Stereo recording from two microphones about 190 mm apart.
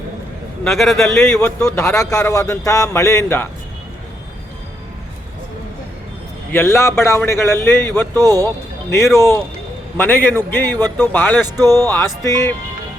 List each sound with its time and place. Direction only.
0.7 s a man's voice: centre (ahead or behind)
1.2 s a man's voice: 10° left (ahead or behind)
6.5 s a man's voice: 15° left (ahead or behind)
8.1 s speech: 20° right (ahead or behind)
9.1 s a man's voice: 15° left (ahead or behind)
11.4 s speech: 20° right (ahead or behind)
11.9 s a man's voice: 15° left (ahead or behind)